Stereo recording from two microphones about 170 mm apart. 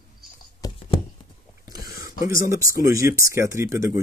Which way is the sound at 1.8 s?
20° right (ahead or behind).